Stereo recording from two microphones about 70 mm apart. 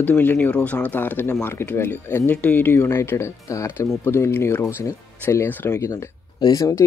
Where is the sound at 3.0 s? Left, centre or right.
Left.